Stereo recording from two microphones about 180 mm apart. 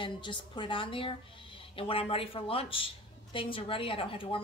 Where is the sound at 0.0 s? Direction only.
25° left (ahead or behind).